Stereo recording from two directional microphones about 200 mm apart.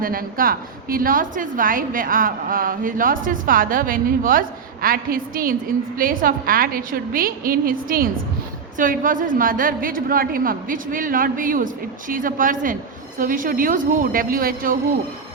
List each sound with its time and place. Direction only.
0.0 s a woman's voice: 45° right (ahead or behind)